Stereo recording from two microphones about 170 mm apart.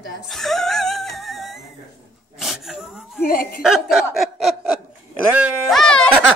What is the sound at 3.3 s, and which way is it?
Speech, 60° left (ahead or behind).